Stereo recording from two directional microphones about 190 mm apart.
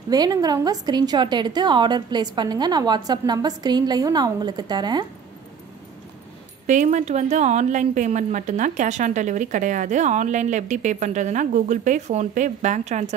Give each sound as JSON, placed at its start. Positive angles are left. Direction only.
{"t": 0.1, "sound": "a woman's voice", "side_deg": -20}
{"t": 6.6, "sound": "a woman's voice", "side_deg": -40}